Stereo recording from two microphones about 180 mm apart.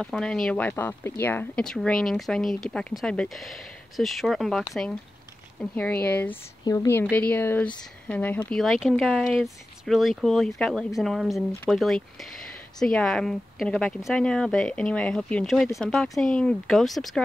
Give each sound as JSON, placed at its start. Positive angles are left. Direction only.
{"t": 0.0, "sound": "a woman's voice", "side_deg": 5}
{"t": 6.6, "sound": "a woman's voice", "side_deg": 20}